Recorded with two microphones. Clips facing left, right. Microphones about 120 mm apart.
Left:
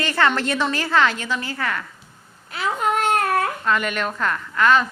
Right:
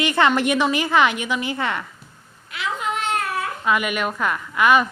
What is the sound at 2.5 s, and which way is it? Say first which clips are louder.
Baby cry: left 4 dB; 40° left (ahead or behind).